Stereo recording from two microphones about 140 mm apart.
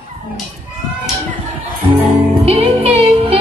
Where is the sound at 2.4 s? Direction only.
45° right (ahead or behind).